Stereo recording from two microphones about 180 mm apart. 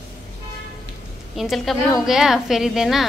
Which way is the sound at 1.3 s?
Centre (ahead or behind).